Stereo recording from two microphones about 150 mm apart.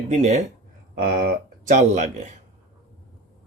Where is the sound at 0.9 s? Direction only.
65° right (ahead or behind).